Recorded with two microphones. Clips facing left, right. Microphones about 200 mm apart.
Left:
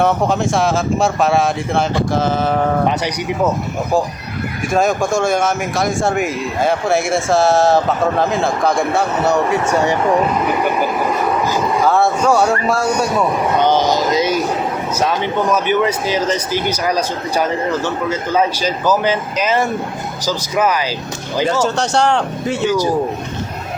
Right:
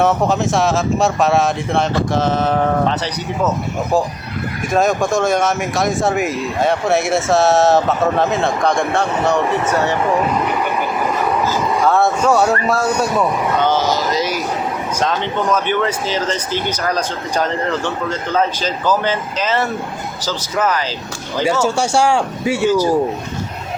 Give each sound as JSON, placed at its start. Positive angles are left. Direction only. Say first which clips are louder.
{"t": 0.0, "sound": "speech", "louder": "even", "side_deg": 0}
{"t": 4.7, "sound": "speech", "louder": "even", "side_deg": 0}
{"t": 11.9, "sound": "speech", "louder": "even", "side_deg": 0}
{"t": 13.6, "sound": "speech", "louder": "left 3 dB", "side_deg": 15}
{"t": 21.6, "sound": "speech", "louder": "even", "side_deg": -10}